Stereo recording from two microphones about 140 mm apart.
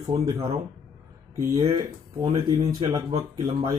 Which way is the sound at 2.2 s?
40° right (ahead or behind).